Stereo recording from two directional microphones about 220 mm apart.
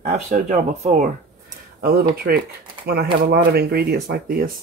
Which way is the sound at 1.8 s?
45° right (ahead or behind).